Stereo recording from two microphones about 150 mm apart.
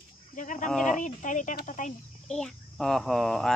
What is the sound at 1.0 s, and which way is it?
Speech, 55° left (ahead or behind).